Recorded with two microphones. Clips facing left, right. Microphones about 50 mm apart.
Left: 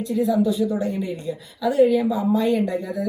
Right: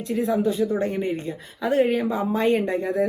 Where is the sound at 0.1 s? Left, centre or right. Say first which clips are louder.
Left 2 dB; right.